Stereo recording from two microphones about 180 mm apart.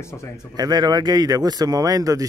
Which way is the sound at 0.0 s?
15° left (ahead or behind).